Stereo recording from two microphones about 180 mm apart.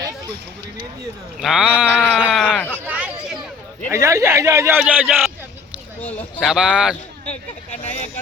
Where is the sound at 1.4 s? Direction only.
5° right (ahead or behind).